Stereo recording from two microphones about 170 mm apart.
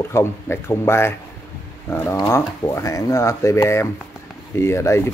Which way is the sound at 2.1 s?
15° left (ahead or behind).